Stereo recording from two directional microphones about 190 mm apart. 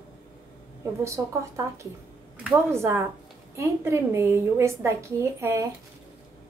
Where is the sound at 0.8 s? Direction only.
15° right (ahead or behind).